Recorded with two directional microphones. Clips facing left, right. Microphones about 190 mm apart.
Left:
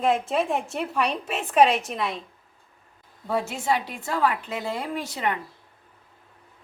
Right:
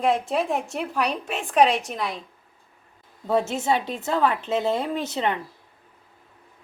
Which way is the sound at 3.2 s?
25° right (ahead or behind).